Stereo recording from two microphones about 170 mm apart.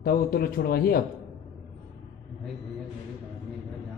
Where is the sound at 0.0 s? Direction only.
60° left (ahead or behind).